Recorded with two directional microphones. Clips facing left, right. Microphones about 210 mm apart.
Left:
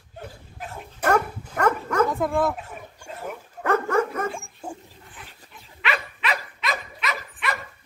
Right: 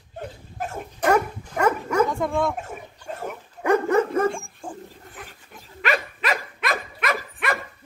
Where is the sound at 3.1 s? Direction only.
50° right (ahead or behind).